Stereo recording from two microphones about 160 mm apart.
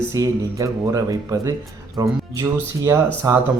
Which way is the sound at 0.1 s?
20° right (ahead or behind).